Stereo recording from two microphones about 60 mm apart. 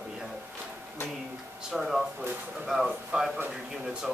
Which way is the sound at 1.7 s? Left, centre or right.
Centre.